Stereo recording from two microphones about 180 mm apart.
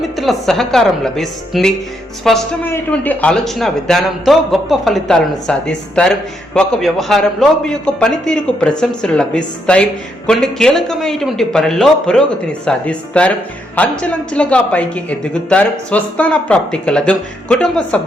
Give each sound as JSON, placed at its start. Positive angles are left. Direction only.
{"t": 0.2, "sound": "a man's voice", "side_deg": 0}